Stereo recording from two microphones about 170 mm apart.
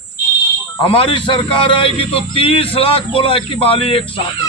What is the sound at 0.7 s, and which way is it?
A man's voice, 30° left (ahead or behind).